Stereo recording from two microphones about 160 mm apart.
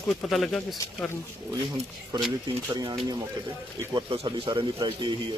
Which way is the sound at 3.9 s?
30° right (ahead or behind).